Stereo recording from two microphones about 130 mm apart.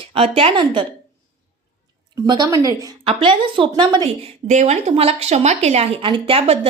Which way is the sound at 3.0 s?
40° right (ahead or behind).